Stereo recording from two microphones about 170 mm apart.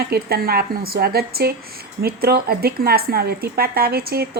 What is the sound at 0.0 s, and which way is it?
Speech, 65° right (ahead or behind).